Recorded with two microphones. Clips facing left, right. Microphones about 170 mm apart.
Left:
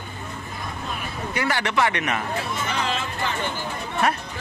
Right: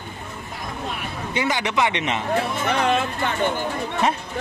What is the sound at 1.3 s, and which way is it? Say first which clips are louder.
Speech: right 1 dB; 15° right (ahead or behind).